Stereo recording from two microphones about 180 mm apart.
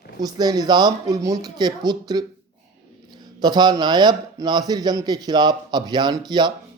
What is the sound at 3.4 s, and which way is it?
A man's voice, 25° right (ahead or behind).